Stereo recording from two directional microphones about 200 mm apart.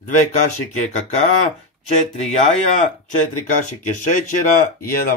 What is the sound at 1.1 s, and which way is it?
Speech, 35° left (ahead or behind).